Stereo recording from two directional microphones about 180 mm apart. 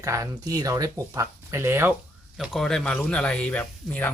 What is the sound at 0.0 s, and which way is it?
Speech, 15° right (ahead or behind).